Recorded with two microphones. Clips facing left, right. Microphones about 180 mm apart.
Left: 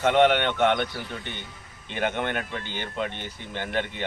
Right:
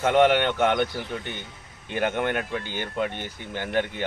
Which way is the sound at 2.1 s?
10° right (ahead or behind).